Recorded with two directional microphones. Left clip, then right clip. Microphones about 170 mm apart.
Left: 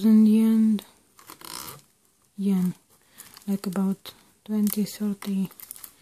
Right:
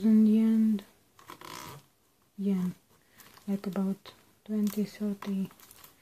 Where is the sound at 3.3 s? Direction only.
40° left (ahead or behind).